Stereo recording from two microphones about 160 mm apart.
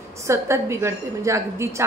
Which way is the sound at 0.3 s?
15° right (ahead or behind).